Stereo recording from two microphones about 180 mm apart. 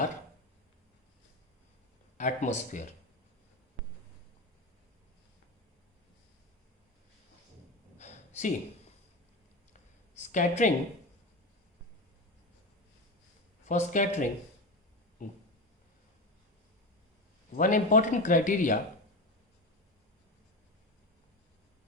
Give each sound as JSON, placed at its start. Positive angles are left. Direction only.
{"t": 2.1, "sound": "speech", "side_deg": 40}
{"t": 7.9, "sound": "a sound", "side_deg": 40}
{"t": 10.2, "sound": "a woman's voice", "side_deg": 40}
{"t": 13.7, "sound": "speech", "side_deg": 45}
{"t": 17.6, "sound": "speech", "side_deg": 45}